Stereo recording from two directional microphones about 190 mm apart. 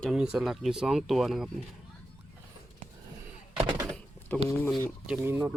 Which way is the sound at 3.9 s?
5° left (ahead or behind).